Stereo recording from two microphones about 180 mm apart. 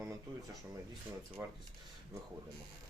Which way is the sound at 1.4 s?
10° right (ahead or behind).